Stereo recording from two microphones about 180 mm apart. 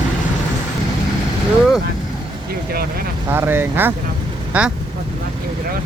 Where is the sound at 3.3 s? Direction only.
10° right (ahead or behind).